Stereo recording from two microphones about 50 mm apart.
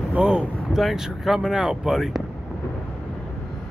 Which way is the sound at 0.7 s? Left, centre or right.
Centre.